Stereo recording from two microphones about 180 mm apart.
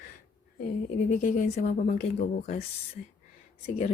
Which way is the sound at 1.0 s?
45° left (ahead or behind).